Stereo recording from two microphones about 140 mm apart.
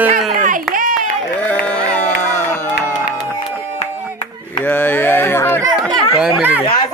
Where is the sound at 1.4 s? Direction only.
10° left (ahead or behind).